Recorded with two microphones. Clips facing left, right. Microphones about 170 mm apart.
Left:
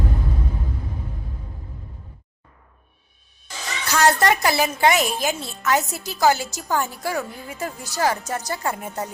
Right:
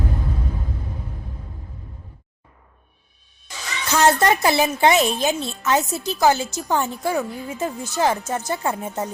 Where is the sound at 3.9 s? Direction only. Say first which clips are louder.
Right 1 dB; 20° right (ahead or behind).